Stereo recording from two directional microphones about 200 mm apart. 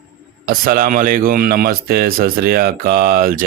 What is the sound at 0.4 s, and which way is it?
A man's voice, 45° right (ahead or behind).